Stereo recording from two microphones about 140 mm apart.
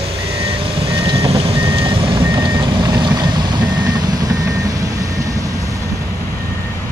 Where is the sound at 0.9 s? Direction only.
40° right (ahead or behind).